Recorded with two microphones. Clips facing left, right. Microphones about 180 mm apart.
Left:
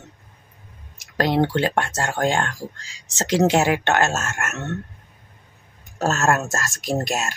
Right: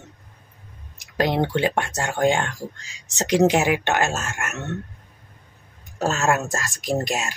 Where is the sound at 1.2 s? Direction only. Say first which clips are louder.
Left 1 dB; 15° right (ahead or behind).